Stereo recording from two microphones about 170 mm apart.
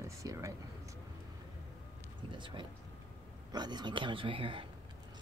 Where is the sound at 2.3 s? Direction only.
30° right (ahead or behind).